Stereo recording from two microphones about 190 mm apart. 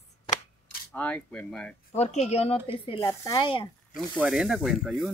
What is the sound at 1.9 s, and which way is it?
Speech, 35° left (ahead or behind).